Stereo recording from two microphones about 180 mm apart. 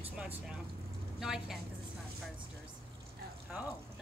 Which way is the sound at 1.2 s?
5° right (ahead or behind).